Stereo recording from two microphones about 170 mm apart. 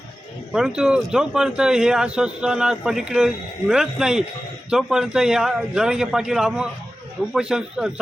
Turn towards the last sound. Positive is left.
turn(degrees=-5)  # may be behind; listen again after turning